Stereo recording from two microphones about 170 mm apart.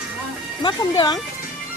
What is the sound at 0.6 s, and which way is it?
Speech, 25° left (ahead or behind).